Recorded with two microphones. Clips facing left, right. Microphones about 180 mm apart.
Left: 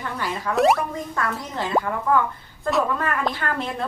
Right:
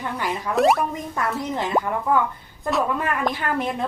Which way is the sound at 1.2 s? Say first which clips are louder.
Right 3 dB; 20° right (ahead or behind).